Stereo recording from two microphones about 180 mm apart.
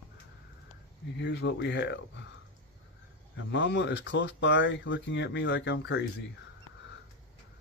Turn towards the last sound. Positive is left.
turn(degrees=75)  # may be behind; listen again after turning